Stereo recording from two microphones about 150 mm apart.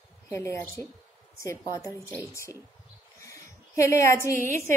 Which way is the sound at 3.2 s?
20° left (ahead or behind).